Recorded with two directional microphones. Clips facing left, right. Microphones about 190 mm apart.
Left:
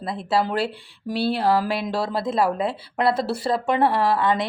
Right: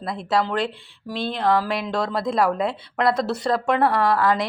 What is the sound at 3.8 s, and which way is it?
Speech, 25° left (ahead or behind).